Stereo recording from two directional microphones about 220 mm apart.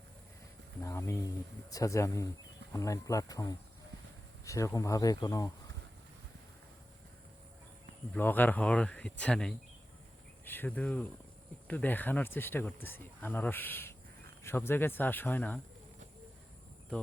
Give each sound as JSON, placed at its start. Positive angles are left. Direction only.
{"t": 0.8, "sound": "speech", "side_deg": 10}
{"t": 8.1, "sound": "speech", "side_deg": 10}